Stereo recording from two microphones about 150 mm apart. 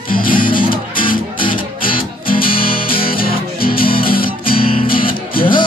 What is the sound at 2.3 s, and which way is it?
Music, 75° left (ahead or behind).